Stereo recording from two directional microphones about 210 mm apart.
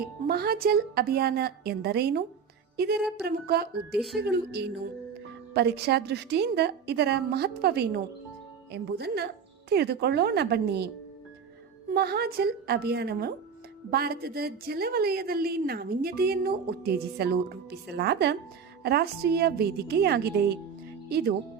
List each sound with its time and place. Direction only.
0.3 s a woman's voice: 45° right (ahead or behind)
3.9 s speech: centre (ahead or behind)
4.2 s a woman's voice: 50° right (ahead or behind)
11.9 s a woman's voice: 50° right (ahead or behind)